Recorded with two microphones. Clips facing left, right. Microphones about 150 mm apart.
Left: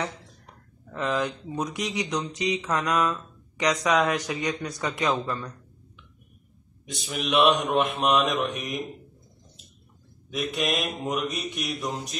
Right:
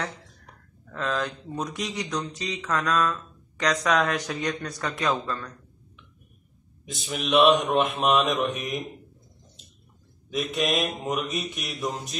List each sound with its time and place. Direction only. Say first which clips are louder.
0.8 s speech: left 2 dB; 15° left (ahead or behind)
6.9 s speech: right 2 dB; centre (ahead or behind)
10.3 s speech: right 2 dB; centre (ahead or behind)